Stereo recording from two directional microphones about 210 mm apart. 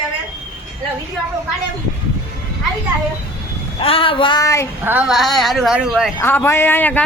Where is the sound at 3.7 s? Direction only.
25° left (ahead or behind).